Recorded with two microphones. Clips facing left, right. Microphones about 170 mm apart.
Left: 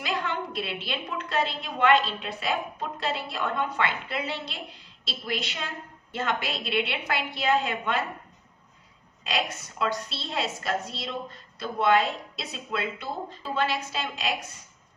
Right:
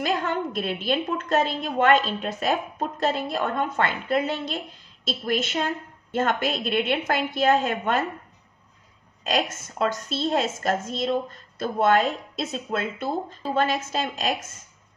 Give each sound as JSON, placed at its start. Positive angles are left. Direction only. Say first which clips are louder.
{"t": 0.0, "sound": "a woman's voice", "louder": "right 5 dB", "side_deg": -45}
{"t": 9.2, "sound": "a woman's voice", "louder": "right 5 dB", "side_deg": -45}